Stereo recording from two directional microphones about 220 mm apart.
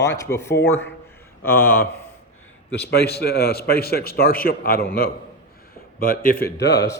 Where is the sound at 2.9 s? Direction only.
45° left (ahead or behind).